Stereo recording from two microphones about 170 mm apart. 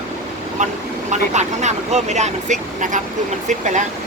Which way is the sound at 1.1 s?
45° right (ahead or behind).